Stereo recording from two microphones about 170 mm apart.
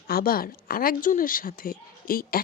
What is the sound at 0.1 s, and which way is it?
Speech, 60° left (ahead or behind).